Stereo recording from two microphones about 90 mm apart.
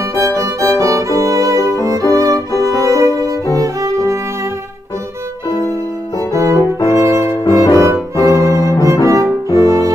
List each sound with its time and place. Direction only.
0.1 s violin: 35° right (ahead or behind)
2.7 s music: 35° left (ahead or behind)
3.5 s violin: 35° right (ahead or behind)
6.4 s music: 35° left (ahead or behind)
9.0 s music: 35° right (ahead or behind)